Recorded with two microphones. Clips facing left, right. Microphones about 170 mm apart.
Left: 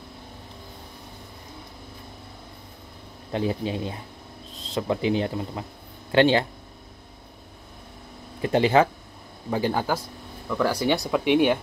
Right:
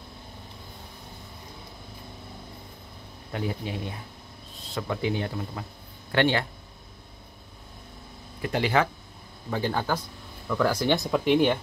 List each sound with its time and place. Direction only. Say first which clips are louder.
3.3 s speech: left 5 dB; 25° left (ahead or behind)
8.4 s speech: left 5 dB; 25° left (ahead or behind)
9.5 s a man's voice: left 3 dB; 15° left (ahead or behind)